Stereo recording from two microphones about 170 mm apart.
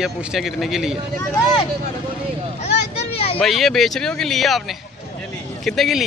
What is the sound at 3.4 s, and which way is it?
A man's voice, centre (ahead or behind).